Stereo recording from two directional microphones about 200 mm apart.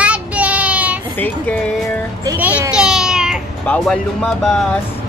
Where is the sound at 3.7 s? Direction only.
5° left (ahead or behind).